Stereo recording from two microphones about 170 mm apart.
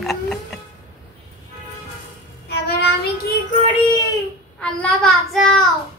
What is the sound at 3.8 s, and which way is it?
Child singing, 25° left (ahead or behind).